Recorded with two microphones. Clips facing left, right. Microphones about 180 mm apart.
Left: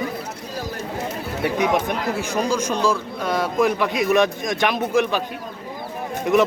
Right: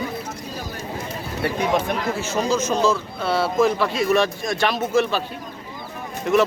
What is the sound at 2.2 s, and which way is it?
A man's voice, 15° left (ahead or behind).